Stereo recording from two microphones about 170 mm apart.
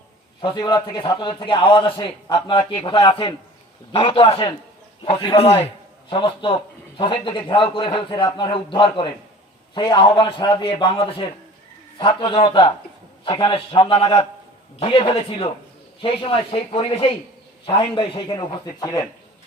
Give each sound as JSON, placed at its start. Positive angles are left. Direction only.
{"t": 0.4, "sound": "a man's voice", "side_deg": 25}